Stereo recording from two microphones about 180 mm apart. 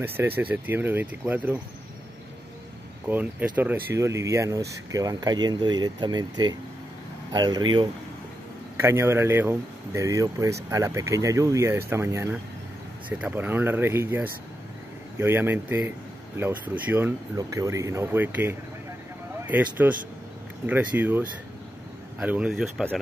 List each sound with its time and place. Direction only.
0.0 s speech: 10° right (ahead or behind)
3.1 s speech: 10° right (ahead or behind)
8.7 s speech: 15° right (ahead or behind)